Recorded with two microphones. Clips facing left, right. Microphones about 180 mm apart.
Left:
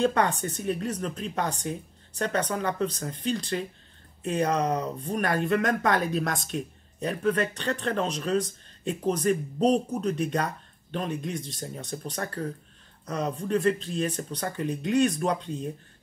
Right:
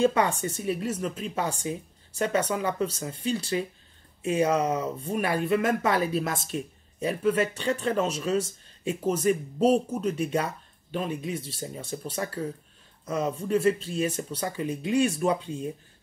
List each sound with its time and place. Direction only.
0.0 s speech: 10° right (ahead or behind)